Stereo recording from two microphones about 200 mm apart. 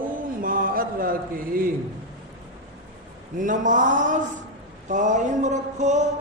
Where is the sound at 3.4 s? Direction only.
40° right (ahead or behind).